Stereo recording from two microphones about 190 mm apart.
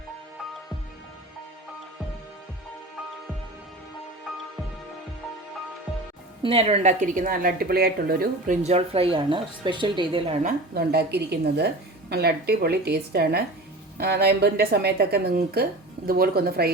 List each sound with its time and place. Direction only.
4.3 s music: centre (ahead or behind)
6.4 s a woman's voice: 30° right (ahead or behind); by 8.5 s 50° right (ahead or behind)
8.6 s speech: 30° right (ahead or behind)
10.4 s a woman's voice: 55° right (ahead or behind)